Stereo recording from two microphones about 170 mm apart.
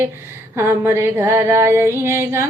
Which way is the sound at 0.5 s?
15° right (ahead or behind).